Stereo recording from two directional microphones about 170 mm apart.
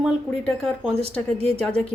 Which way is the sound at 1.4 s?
5° left (ahead or behind).